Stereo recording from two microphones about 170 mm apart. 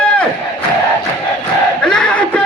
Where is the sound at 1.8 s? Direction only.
5° left (ahead or behind).